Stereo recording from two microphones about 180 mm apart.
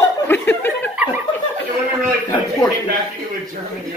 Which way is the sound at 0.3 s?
10° left (ahead or behind).